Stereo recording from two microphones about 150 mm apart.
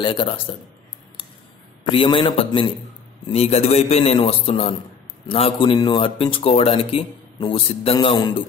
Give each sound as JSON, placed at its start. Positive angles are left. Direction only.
{"t": 0.0, "sound": "speech", "side_deg": 35}
{"t": 1.9, "sound": "a man's voice", "side_deg": 35}